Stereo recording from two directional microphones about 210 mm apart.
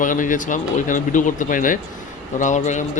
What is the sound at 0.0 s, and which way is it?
A man's voice, 40° left (ahead or behind).